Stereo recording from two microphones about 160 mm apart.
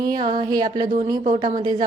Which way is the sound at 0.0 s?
25° right (ahead or behind).